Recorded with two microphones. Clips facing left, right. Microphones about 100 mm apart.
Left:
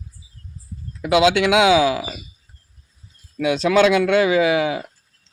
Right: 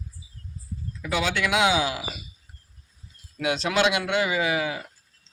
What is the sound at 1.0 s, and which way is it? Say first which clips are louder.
Speech: left 10 dB; 90° left.